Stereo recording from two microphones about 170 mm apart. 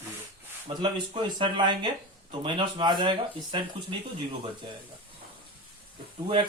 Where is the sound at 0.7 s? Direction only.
30° right (ahead or behind).